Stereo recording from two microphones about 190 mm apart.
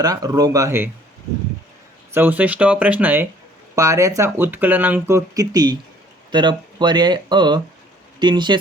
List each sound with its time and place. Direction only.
0.0 s speech: 20° right (ahead or behind)
2.1 s speech: 10° right (ahead or behind)